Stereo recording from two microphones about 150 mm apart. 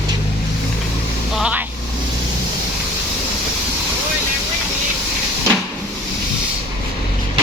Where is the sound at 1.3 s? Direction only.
5° right (ahead or behind).